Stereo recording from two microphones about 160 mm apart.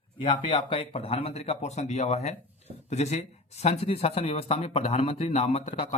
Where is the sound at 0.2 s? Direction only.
30° left (ahead or behind).